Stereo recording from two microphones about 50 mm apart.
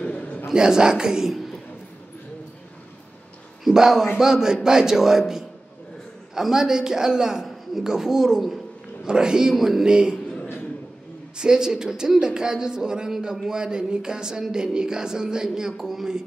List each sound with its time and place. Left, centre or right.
0.0 s a sound: left
0.5 s speech: centre
3.6 s speech: centre
6.3 s speech: centre
11.3 s speech: centre